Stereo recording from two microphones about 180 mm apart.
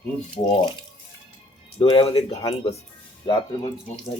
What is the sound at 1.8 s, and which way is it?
Speech, 30° left (ahead or behind).